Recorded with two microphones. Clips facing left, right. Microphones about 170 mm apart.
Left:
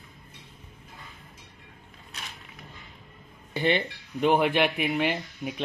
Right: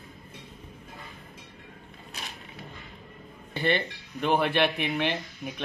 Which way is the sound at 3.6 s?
15° left (ahead or behind).